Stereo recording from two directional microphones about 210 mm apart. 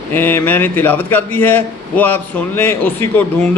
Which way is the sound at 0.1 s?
10° left (ahead or behind).